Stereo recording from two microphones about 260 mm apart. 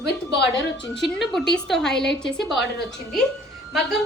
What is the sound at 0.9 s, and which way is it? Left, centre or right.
A woman's voice, centre.